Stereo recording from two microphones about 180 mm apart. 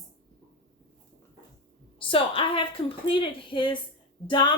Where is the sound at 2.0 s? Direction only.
30° left (ahead or behind).